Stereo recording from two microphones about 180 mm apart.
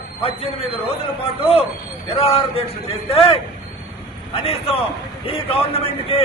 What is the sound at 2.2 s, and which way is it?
A man's voice, 30° left (ahead or behind).